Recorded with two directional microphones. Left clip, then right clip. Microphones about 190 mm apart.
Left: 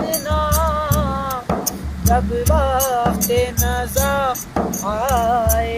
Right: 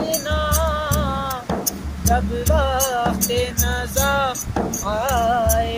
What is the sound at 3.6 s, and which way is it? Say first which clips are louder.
Keys jangling: left 2 dB; 25° left (ahead or behind).